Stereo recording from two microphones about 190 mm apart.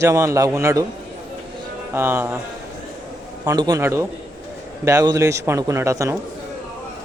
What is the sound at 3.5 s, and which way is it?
A man's voice, 20° right (ahead or behind).